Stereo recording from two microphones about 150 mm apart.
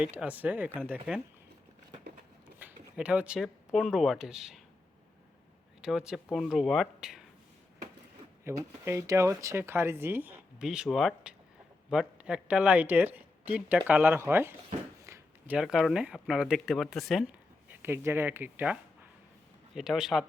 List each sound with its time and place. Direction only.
0.0 s speech: 10° right (ahead or behind)
2.6 s speech: 10° right (ahead or behind)
5.8 s speech: 5° right (ahead or behind)
8.4 s speech: 15° right (ahead or behind)
15.0 s a sound: 20° right (ahead or behind)
15.5 s speech: centre (ahead or behind)
17.7 s speech: 15° right (ahead or behind)